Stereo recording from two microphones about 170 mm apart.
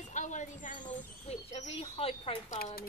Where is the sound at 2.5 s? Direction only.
50° left (ahead or behind).